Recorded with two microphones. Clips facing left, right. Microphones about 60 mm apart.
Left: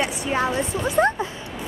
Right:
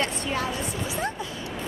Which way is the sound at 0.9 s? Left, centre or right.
Left.